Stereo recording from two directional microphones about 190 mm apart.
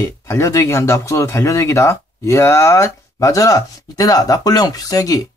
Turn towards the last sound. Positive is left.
turn(degrees=20)  # may be behind; listen again after turning